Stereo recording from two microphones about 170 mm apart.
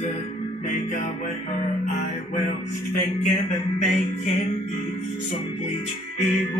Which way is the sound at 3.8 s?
45° left (ahead or behind).